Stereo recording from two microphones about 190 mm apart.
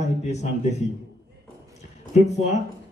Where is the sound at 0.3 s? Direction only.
35° left (ahead or behind).